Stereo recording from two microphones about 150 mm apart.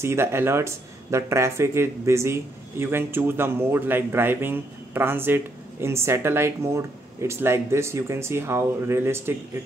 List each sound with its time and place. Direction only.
0.0 s speech: 15° right (ahead or behind)